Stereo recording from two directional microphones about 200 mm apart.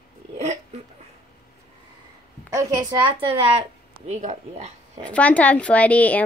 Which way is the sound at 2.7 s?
20° right (ahead or behind).